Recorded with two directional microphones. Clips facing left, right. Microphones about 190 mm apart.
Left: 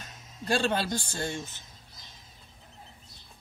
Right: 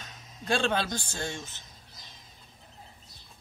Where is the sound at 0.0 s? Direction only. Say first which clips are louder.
Left 2 dB; 5° left (ahead or behind).